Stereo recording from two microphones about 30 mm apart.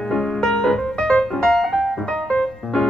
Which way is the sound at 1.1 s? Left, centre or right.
Left.